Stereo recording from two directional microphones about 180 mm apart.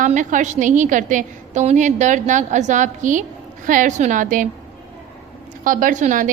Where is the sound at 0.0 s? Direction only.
45° right (ahead or behind).